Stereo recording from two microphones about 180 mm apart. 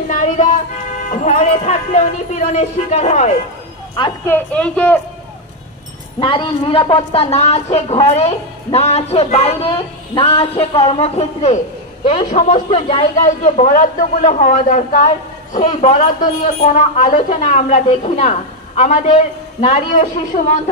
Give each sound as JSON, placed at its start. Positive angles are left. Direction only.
{"t": 0.1, "sound": "music", "side_deg": 45}
{"t": 1.1, "sound": "a woman's voice", "side_deg": 40}
{"t": 4.3, "sound": "a woman's voice", "side_deg": 5}
{"t": 6.1, "sound": "a woman's voice", "side_deg": 25}